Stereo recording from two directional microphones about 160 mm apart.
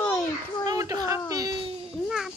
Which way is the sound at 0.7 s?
20° right (ahead or behind).